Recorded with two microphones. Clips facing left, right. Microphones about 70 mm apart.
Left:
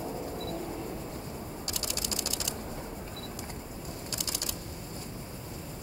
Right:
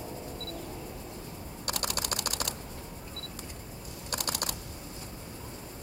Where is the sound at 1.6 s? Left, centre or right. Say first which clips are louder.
Right 8 dB; right.